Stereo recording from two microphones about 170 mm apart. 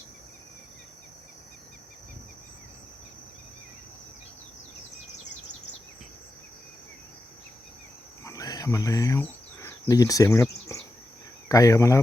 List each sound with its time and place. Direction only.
8.2 s cricket: 20° left (ahead or behind)
11.4 s speech: 20° left (ahead or behind)